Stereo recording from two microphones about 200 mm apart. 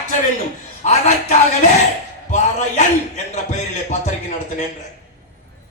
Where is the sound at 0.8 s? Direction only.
35° left (ahead or behind).